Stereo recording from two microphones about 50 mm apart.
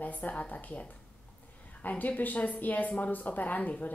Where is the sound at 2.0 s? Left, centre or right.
Left.